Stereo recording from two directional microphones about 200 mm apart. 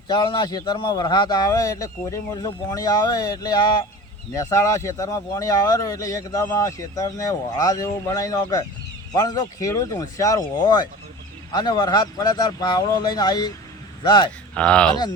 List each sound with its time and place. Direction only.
0.1 s speech: 25° left (ahead or behind)
14.5 s speech: 5° left (ahead or behind)